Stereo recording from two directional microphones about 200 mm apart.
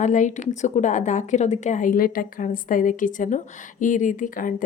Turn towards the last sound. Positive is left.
turn(degrees=45)  # may be behind; listen again after turning